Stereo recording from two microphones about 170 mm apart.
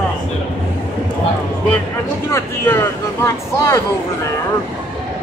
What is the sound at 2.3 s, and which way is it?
Speech, 15° left (ahead or behind).